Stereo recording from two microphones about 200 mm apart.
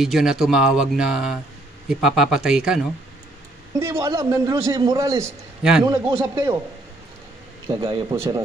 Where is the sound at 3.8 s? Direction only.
15° right (ahead or behind).